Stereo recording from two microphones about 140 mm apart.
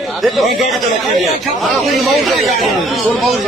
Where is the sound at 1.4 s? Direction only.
Centre (ahead or behind).